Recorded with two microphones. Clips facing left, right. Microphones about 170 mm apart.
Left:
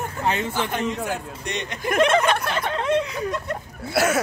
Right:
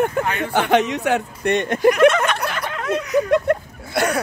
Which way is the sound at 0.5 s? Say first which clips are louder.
Right 7 dB; 75° right (ahead or behind).